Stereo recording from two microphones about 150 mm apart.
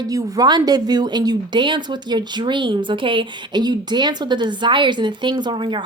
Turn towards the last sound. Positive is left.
turn(degrees=-30)  # may be behind; listen again after turning